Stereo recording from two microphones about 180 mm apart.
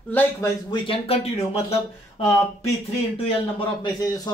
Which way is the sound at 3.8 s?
20° left (ahead or behind).